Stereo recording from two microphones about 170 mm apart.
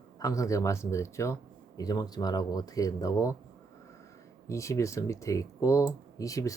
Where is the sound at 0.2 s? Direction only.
20° left (ahead or behind).